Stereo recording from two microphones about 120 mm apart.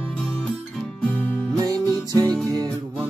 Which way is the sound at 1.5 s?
30° right (ahead or behind).